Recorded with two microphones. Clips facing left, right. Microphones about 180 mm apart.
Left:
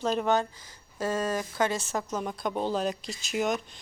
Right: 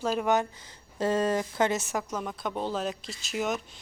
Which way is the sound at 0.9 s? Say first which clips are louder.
Right 3 dB; 25° right (ahead or behind).